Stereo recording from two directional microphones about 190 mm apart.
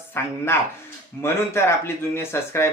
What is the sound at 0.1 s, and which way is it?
Speech, 10° left (ahead or behind).